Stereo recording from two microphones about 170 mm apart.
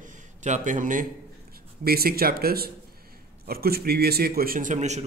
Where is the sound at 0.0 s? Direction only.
45° right (ahead or behind).